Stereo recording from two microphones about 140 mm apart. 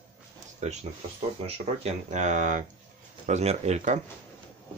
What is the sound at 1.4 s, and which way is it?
Speech, 50° right (ahead or behind).